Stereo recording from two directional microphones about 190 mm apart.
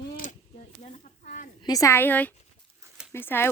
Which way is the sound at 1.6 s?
20° left (ahead or behind).